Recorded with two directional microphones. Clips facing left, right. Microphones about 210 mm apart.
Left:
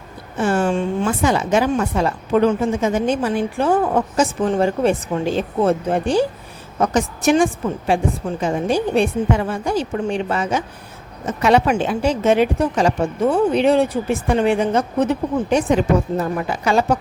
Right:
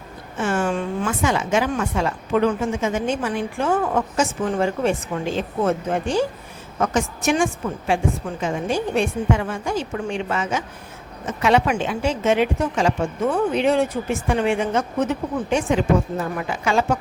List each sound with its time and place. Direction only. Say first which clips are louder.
0.3 s a woman's voice: left 4 dB; 35° left (ahead or behind)